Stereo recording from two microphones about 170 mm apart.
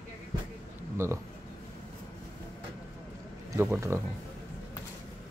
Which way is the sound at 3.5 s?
15° right (ahead or behind).